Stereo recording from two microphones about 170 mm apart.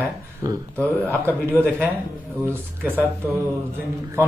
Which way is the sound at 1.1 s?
15° right (ahead or behind).